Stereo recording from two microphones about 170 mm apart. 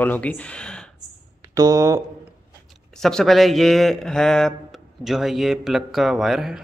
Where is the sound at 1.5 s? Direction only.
20° right (ahead or behind).